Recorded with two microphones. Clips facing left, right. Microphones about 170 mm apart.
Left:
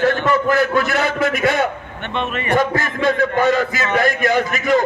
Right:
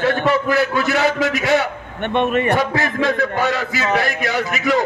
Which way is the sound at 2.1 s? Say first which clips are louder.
Right 6 dB; 50° right (ahead or behind).